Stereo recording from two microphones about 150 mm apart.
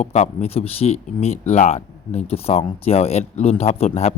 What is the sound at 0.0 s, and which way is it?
Speech, 50° left (ahead or behind).